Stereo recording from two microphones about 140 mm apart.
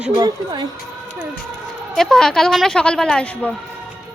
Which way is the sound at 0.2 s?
30° right (ahead or behind).